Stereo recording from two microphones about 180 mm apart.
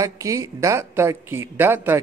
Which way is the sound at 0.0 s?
20° right (ahead or behind).